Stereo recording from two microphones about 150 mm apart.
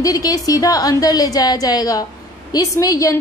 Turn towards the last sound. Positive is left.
turn(degrees=20)  # may be behind; listen again after turning